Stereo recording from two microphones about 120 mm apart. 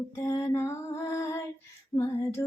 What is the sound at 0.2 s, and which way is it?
Lullaby, 25° left (ahead or behind).